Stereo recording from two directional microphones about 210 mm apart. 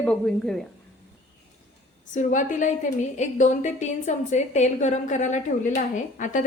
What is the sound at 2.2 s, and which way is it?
A woman's voice, 35° left (ahead or behind).